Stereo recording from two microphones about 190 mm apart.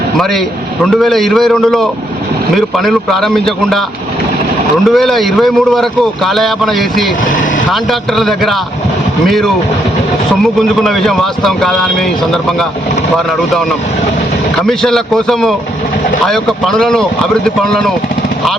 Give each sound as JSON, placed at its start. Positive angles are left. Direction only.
{"t": 0.9, "sound": "speech", "side_deg": 0}
{"t": 4.9, "sound": "speech", "side_deg": 0}
{"t": 14.7, "sound": "speech", "side_deg": 0}